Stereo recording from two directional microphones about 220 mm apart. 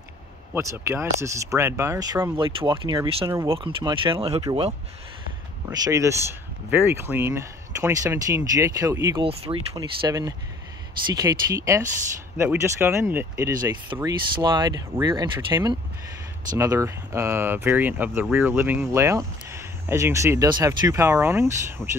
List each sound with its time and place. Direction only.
0.6 s speech: 15° right (ahead or behind)
3.5 s speech: 25° right (ahead or behind)
21.8 s speech: centre (ahead or behind)